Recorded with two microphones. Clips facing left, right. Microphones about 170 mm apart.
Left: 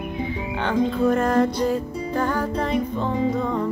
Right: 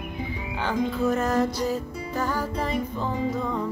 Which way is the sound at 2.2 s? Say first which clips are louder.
Left 3 dB; 55° left (ahead or behind).